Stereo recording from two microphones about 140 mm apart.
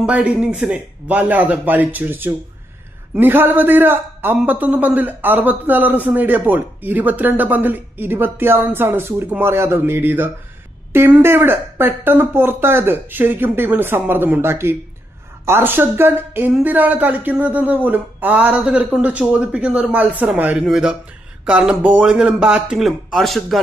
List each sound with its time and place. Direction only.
0.0 s a man's voice: 10° right (ahead or behind)